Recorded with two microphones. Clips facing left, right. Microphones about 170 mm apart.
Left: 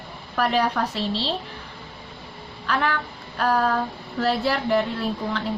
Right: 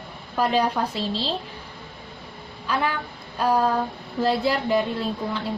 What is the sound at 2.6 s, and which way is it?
Speech, 10° right (ahead or behind).